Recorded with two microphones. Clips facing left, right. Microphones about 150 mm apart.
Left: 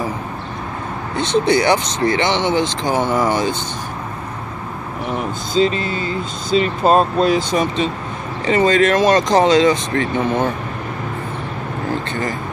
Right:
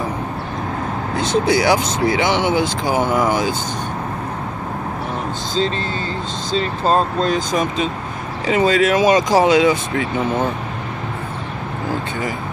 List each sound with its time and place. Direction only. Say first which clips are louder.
1.1 s speech: left 1 dB; centre (ahead or behind)
5.5 s speech: left 5 dB; 10° left (ahead or behind); by 10.5 s 5° right (ahead or behind)